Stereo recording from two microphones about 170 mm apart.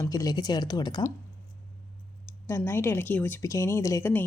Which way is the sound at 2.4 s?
15° left (ahead or behind).